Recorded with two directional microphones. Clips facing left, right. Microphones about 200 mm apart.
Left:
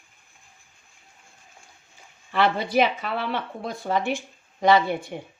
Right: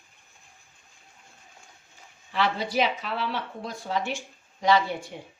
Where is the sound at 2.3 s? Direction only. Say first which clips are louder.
Left 4 dB; 55° left (ahead or behind).